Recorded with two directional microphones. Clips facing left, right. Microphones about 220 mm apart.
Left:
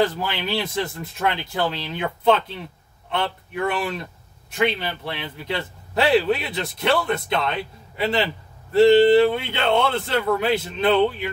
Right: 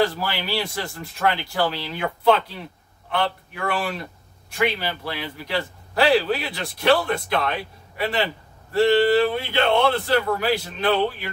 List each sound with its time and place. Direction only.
0.0 s a man's voice: 20° left (ahead or behind)